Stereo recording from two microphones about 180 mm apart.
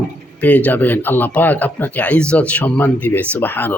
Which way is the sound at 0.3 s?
10° left (ahead or behind).